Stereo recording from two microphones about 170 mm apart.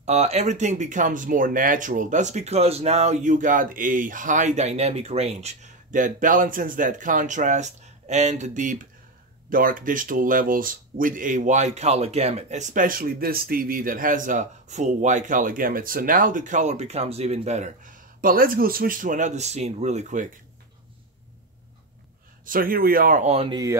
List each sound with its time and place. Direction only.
0.0 s speech: 40° right (ahead or behind)
22.4 s speech: 55° right (ahead or behind)
23.3 s speech: 30° right (ahead or behind)